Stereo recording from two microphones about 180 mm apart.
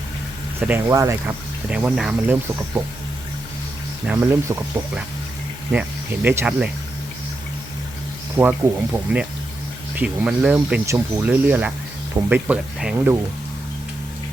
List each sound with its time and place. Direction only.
0.6 s speech: 15° right (ahead or behind)
1.7 s speech: 5° right (ahead or behind)
4.0 s speech: 10° right (ahead or behind)
6.2 s speech: 10° right (ahead or behind)
8.4 s speech: 10° right (ahead or behind)